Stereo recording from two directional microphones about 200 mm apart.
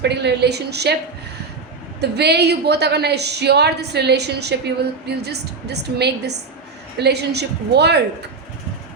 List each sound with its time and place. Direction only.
0.0 s a woman's voice: 55° right (ahead or behind)
2.0 s a woman's voice: 55° right (ahead or behind)